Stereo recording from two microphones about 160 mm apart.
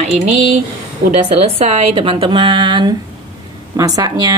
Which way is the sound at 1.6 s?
40° right (ahead or behind).